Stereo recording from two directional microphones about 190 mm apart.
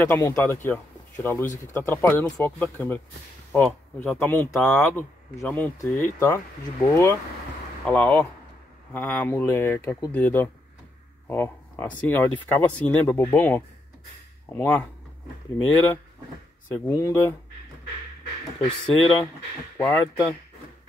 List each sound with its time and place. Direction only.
0.0 s speech: 15° left (ahead or behind)
7.8 s speech: 10° left (ahead or behind)
18.9 s speech: centre (ahead or behind)
19.8 s speech: 15° left (ahead or behind)